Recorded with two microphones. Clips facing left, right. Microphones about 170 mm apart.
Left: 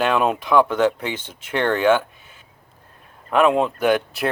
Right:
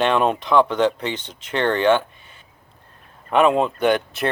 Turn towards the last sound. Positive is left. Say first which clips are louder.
# even
turn(degrees=5)  # may be behind; listen again after turning